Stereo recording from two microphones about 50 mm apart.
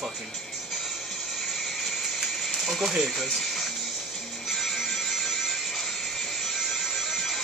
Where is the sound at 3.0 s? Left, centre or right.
Centre.